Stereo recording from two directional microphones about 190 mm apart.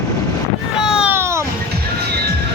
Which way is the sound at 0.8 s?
5° right (ahead or behind).